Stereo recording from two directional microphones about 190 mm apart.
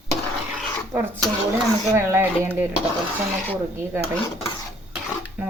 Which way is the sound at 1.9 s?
15° right (ahead or behind).